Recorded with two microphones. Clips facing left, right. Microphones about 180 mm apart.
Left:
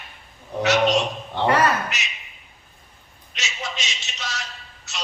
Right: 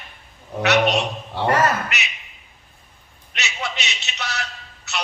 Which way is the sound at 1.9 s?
65° right (ahead or behind).